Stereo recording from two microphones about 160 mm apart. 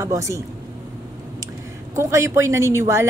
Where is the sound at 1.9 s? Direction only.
20° right (ahead or behind).